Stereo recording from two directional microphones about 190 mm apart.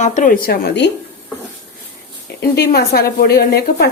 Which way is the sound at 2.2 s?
55° left (ahead or behind).